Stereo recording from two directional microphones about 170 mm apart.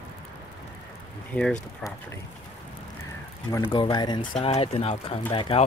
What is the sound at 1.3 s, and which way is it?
Speech, 5° left (ahead or behind).